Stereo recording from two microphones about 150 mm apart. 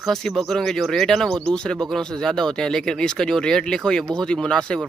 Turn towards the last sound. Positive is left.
turn(degrees=5)  # may be behind; listen again after turning